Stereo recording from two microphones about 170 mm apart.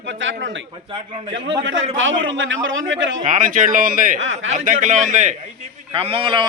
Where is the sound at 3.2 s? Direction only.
50° right (ahead or behind).